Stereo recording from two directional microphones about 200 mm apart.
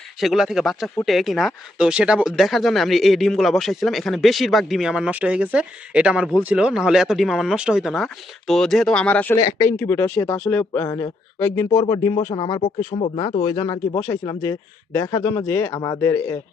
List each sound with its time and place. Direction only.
0.2 s speech: centre (ahead or behind)